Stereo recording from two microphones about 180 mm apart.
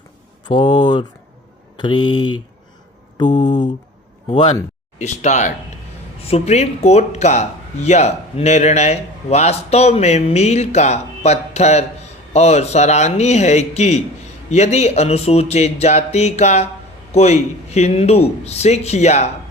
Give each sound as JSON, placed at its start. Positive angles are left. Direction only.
{"t": 0.4, "sound": "speech", "side_deg": 25}
{"t": 3.2, "sound": "mantra", "side_deg": 45}
{"t": 4.9, "sound": "speech", "side_deg": 40}